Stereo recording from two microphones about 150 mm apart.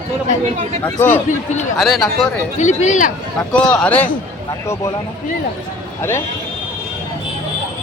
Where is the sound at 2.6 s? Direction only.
50° left (ahead or behind).